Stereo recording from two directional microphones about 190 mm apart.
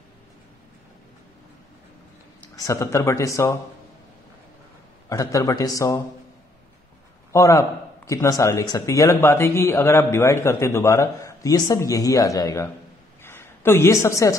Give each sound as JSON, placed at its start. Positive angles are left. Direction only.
{"t": 2.5, "sound": "speech", "side_deg": 15}
{"t": 5.1, "sound": "speech", "side_deg": 15}
{"t": 7.3, "sound": "speech", "side_deg": 15}
{"t": 13.2, "sound": "a sound", "side_deg": 10}